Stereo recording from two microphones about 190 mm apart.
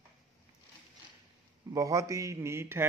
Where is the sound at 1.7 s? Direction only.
20° right (ahead or behind).